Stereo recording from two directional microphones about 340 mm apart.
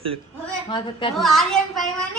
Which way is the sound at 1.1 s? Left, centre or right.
Centre.